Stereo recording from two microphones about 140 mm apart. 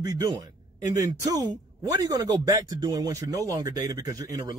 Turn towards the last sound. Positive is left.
turn(degrees=-25)  # may be behind; listen again after turning